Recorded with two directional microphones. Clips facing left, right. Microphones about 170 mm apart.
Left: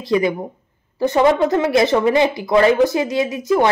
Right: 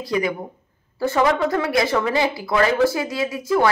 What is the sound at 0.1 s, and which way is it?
Speech, 25° left (ahead or behind).